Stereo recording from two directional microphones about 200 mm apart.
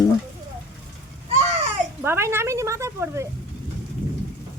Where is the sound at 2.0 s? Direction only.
10° right (ahead or behind).